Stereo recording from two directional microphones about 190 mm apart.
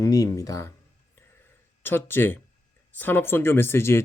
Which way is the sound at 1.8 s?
10° left (ahead or behind).